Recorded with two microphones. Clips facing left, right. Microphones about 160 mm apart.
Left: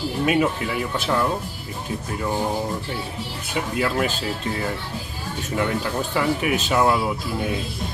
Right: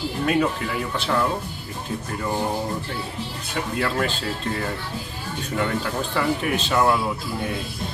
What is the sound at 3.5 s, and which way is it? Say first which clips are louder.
Speech: left 2 dB; 5° left (ahead or behind).